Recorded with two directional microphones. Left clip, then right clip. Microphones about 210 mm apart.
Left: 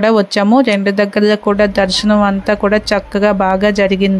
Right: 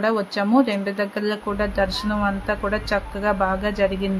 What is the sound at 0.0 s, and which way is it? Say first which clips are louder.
Speech: left 10 dB; 35° left (ahead or behind).